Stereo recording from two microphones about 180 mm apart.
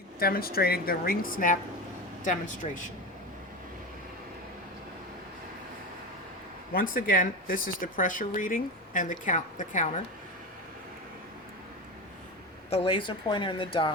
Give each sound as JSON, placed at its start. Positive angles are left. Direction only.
{"t": 0.2, "sound": "speech", "side_deg": 55}
{"t": 2.6, "sound": "speech", "side_deg": 35}
{"t": 6.7, "sound": "speech", "side_deg": 50}
{"t": 12.7, "sound": "speech", "side_deg": 30}